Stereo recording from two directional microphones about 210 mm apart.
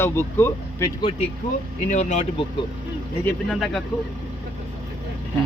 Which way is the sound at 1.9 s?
35° left (ahead or behind).